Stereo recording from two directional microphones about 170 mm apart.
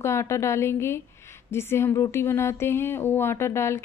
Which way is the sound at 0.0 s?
15° left (ahead or behind).